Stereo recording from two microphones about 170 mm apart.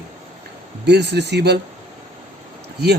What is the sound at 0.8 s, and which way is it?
Speech, 80° right.